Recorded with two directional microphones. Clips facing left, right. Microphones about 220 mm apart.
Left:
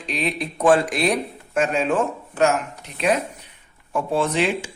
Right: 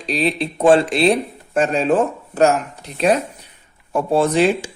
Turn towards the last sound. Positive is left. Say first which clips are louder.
# right 6 dB
turn(degrees=-35)  # may be behind; listen again after turning